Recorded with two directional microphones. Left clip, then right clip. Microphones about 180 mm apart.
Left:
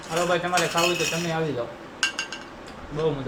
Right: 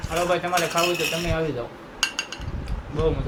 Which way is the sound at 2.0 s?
30° right (ahead or behind).